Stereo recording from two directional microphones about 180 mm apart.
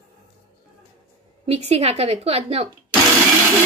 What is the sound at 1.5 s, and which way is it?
A woman's voice, 35° right (ahead or behind).